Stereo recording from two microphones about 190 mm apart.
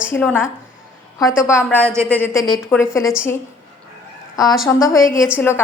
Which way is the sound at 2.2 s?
15° left (ahead or behind).